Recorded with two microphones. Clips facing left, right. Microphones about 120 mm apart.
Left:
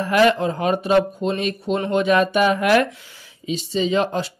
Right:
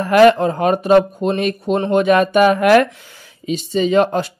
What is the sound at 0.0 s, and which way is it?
Speech, 55° right (ahead or behind).